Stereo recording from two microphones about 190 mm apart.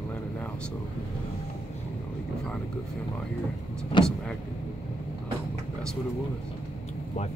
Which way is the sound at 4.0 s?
25° left (ahead or behind).